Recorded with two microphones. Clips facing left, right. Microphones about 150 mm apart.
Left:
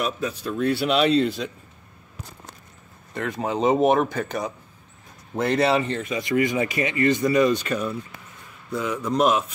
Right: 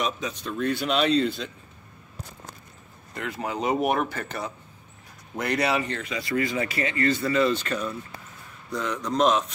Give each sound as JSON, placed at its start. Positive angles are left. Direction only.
{"t": 0.0, "sound": "speech", "side_deg": 5}
{"t": 3.3, "sound": "speech", "side_deg": 20}
{"t": 5.3, "sound": "a man's voice", "side_deg": 25}